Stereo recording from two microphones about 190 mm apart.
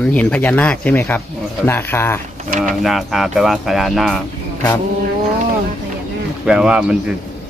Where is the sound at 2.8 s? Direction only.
Centre (ahead or behind).